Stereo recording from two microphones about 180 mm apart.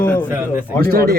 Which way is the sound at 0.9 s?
55° right (ahead or behind).